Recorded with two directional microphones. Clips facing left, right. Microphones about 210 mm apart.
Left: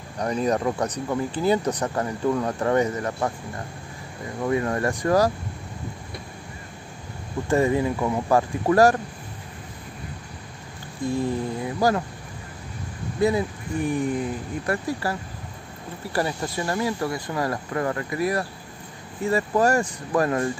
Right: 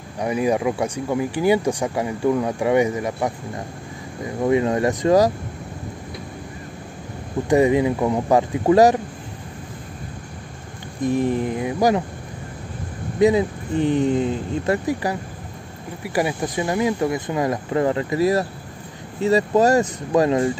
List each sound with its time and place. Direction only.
0.2 s speech: 10° right (ahead or behind)
7.4 s speech: 15° right (ahead or behind)
11.0 s speech: 20° right (ahead or behind)
13.2 s speech: 20° right (ahead or behind)